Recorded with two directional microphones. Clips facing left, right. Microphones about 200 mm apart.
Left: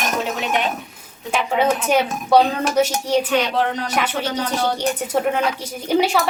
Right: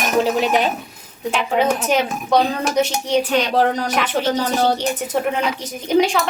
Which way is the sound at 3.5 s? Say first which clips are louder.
Right 4 dB; 40° right (ahead or behind).